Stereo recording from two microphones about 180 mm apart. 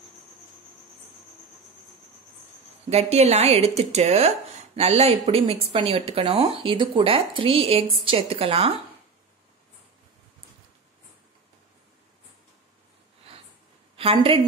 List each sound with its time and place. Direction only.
2.9 s speech: 35° right (ahead or behind)
13.9 s a woman's voice: 30° right (ahead or behind)